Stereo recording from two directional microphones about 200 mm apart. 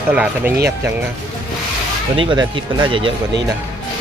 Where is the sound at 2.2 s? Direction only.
25° right (ahead or behind).